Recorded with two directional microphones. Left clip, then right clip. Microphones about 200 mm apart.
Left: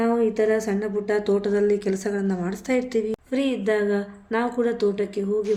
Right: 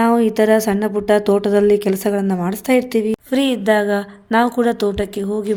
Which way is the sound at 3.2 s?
60° right (ahead or behind).